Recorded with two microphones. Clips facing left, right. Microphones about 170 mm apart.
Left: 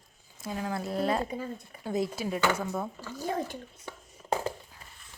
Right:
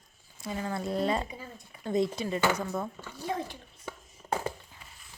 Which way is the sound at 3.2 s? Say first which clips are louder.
Left 2 dB; 40° left (ahead or behind).